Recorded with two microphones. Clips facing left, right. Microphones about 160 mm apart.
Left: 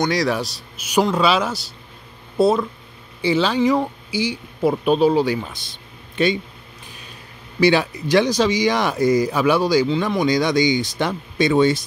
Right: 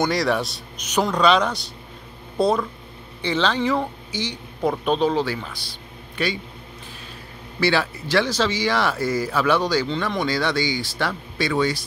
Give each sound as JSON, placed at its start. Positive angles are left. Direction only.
{"t": 0.0, "sound": "a man's voice", "side_deg": 0}
{"t": 7.6, "sound": "speech", "side_deg": 15}